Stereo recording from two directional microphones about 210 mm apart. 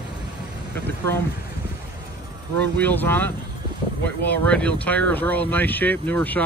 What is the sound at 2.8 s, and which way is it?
Speech, 10° left (ahead or behind).